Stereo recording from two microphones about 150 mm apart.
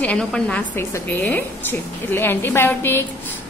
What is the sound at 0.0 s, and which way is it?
A woman's voice, 5° left (ahead or behind).